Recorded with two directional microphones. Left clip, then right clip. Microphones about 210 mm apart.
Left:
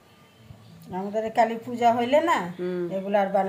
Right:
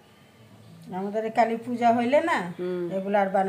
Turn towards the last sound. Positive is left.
turn(degrees=5)  # may be behind; listen again after turning